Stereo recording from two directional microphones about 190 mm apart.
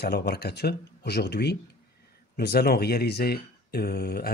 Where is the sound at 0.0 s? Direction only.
60° left (ahead or behind).